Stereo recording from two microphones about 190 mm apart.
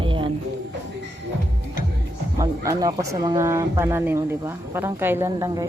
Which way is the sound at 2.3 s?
20° right (ahead or behind).